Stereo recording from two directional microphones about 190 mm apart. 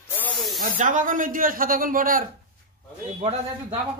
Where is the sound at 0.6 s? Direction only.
45° right (ahead or behind).